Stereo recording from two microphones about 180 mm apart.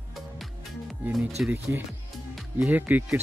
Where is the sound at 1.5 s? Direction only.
10° right (ahead or behind).